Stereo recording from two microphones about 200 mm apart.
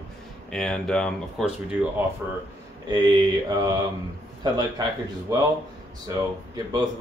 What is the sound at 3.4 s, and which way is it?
Speech, 20° right (ahead or behind).